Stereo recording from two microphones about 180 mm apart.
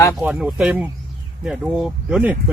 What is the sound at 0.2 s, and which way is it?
Speech, 5° right (ahead or behind).